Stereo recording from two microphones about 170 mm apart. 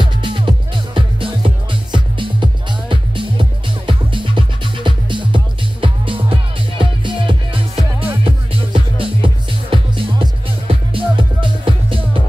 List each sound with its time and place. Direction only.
0.0 s music: 30° right (ahead or behind)
8.7 s music: 30° right (ahead or behind)